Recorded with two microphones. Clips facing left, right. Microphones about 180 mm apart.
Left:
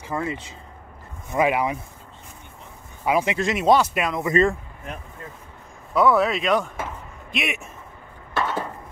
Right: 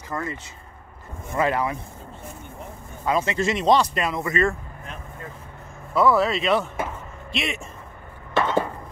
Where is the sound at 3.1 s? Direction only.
10° left (ahead or behind).